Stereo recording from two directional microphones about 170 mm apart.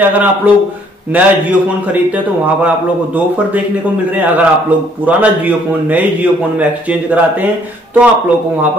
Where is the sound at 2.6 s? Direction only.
10° right (ahead or behind).